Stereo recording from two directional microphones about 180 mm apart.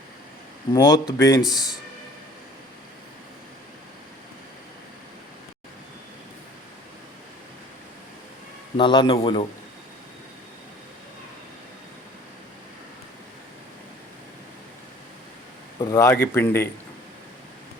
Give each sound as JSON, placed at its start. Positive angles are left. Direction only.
{"t": 0.7, "sound": "speech", "side_deg": 20}
{"t": 8.8, "sound": "speech", "side_deg": 25}
{"t": 15.8, "sound": "speech", "side_deg": 15}